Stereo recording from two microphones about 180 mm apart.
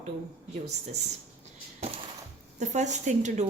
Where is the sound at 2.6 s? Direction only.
40° right (ahead or behind).